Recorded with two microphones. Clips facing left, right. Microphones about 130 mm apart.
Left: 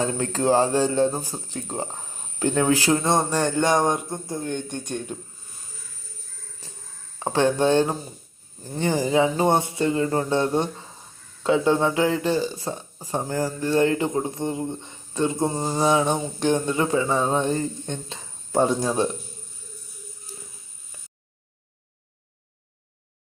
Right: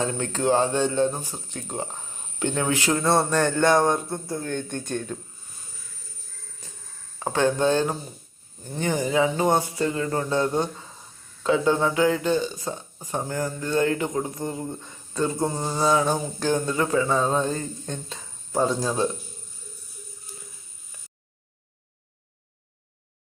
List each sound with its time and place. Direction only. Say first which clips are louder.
0.0 s speech: left 2 dB; 30° left (ahead or behind)
3.0 s speech: right 1 dB; 15° left (ahead or behind)
7.2 s a man's voice: left 2 dB; 30° left (ahead or behind)